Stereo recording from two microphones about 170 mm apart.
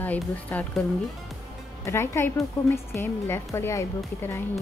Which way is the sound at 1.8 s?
15° left (ahead or behind).